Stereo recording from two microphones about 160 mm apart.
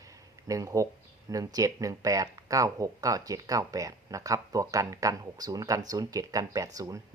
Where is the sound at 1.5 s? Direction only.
20° right (ahead or behind).